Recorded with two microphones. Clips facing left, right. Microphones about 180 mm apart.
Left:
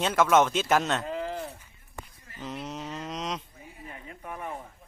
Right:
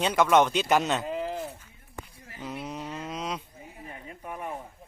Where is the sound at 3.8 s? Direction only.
20° right (ahead or behind).